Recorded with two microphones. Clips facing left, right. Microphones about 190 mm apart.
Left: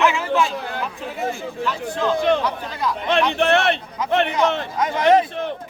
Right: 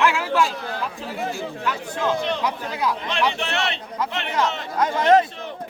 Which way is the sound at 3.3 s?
55° left (ahead or behind).